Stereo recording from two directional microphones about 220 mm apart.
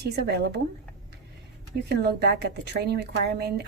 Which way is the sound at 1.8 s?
50° right (ahead or behind).